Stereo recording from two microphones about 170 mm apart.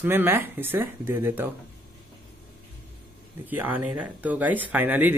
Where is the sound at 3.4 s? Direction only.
10° right (ahead or behind).